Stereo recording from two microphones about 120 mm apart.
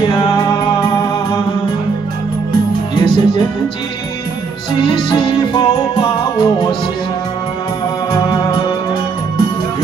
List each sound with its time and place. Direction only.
0.0 s music: 40° left (ahead or behind)
2.9 s music: 40° left (ahead or behind)
4.7 s music: 40° left (ahead or behind)
8.1 s music: 35° left (ahead or behind)